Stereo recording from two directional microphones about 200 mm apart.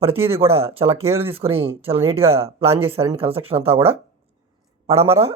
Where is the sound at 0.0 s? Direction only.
30° right (ahead or behind).